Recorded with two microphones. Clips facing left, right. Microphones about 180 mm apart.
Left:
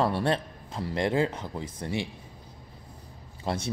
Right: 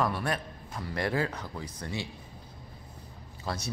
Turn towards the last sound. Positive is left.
turn(degrees=25)  # may be behind; listen again after turning